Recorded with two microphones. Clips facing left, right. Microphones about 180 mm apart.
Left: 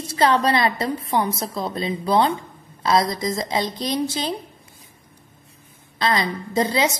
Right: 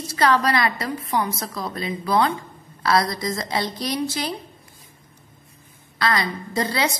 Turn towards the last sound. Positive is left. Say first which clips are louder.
# left 3 dB
turn(degrees=15)  # may be behind; listen again after turning